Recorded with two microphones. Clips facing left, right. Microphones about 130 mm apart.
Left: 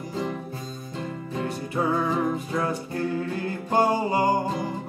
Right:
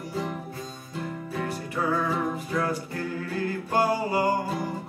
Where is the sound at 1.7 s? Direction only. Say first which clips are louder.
Left 2 dB; 20° left (ahead or behind).